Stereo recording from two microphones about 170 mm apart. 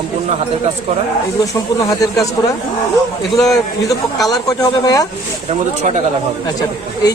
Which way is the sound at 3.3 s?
Centre (ahead or behind).